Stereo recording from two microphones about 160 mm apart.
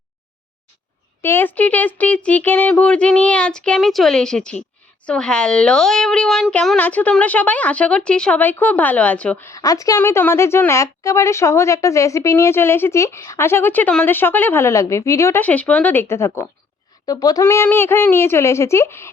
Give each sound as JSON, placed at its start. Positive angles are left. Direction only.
{"t": 1.2, "sound": "a woman's voice", "side_deg": 15}
{"t": 9.5, "sound": "a woman's voice", "side_deg": 20}